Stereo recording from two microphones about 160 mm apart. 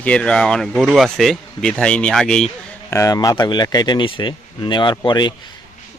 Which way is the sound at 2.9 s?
20° left (ahead or behind).